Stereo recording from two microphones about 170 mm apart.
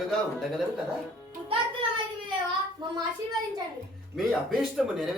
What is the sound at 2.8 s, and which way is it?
Speech, 25° right (ahead or behind).